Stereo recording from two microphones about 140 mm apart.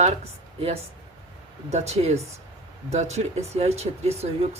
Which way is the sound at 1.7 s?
50° right (ahead or behind).